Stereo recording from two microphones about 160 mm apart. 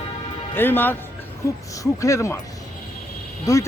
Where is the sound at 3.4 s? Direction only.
20° left (ahead or behind).